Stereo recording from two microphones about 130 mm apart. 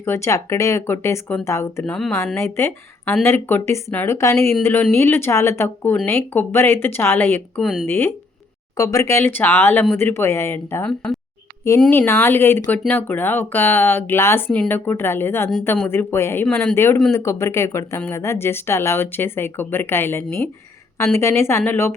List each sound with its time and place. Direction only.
0.0 s a woman's voice: 20° left (ahead or behind)
1.8 s speech: 5° left (ahead or behind)
2.3 s a woman's voice: 20° left (ahead or behind)
7.6 s speech: centre (ahead or behind)
7.9 s a woman's voice: 15° left (ahead or behind)
10.8 s a woman's voice: 5° left (ahead or behind)